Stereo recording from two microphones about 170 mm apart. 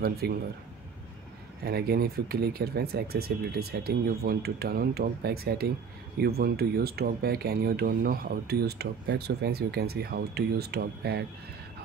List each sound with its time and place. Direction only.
0.2 s speech: 70° right (ahead or behind)
1.6 s speech: 65° right (ahead or behind)